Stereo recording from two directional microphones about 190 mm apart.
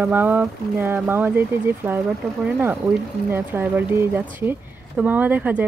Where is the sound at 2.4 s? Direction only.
10° right (ahead or behind).